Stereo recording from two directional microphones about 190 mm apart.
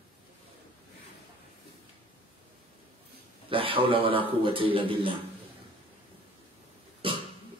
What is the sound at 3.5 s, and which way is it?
A man's voice, 30° right (ahead or behind).